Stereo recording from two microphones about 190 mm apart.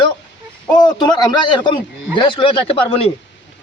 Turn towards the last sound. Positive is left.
turn(degrees=30)  # may be behind; listen again after turning